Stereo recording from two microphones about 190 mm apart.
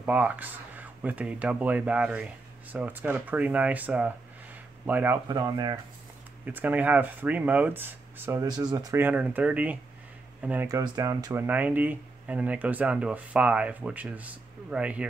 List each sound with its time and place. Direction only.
0.0 s speech: 10° right (ahead or behind)
6.4 s speech: 10° right (ahead or behind)